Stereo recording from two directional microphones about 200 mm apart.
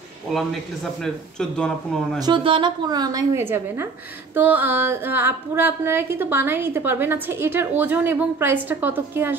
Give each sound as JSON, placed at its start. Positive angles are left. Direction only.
{"t": 0.3, "sound": "speech", "side_deg": 0}
{"t": 2.1, "sound": "a woman's voice", "side_deg": -20}